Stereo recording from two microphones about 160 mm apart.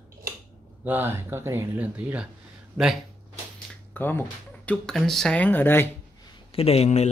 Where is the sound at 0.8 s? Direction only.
15° right (ahead or behind).